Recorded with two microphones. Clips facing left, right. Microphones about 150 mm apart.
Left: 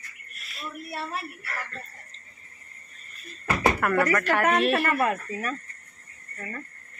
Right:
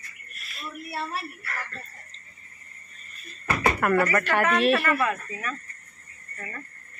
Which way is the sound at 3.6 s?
Centre (ahead or behind).